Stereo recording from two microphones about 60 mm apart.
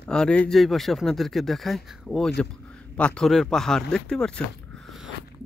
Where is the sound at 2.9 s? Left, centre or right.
Left.